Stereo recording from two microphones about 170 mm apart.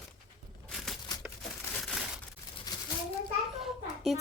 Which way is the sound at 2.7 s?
25° left (ahead or behind).